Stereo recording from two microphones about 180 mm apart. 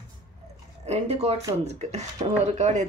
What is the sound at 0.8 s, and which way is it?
Speech, 35° right (ahead or behind).